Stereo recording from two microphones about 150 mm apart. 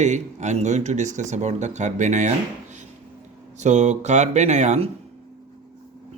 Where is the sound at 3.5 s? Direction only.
50° right (ahead or behind).